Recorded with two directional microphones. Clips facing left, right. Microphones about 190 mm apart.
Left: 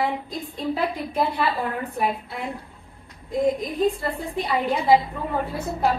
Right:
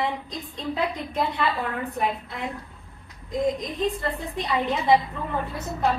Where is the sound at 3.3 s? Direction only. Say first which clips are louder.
Left 3 dB; 55° left (ahead or behind).